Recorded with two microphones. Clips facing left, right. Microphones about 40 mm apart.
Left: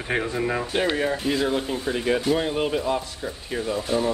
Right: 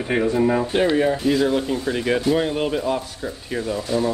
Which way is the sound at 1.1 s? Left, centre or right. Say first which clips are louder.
Right 4 dB; centre.